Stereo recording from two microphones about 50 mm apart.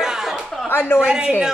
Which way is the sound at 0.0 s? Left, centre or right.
Centre.